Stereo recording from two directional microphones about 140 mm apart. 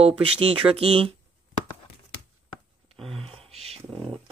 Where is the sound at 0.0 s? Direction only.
45° right (ahead or behind).